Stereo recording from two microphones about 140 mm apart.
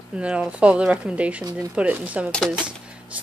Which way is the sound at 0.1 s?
5° right (ahead or behind).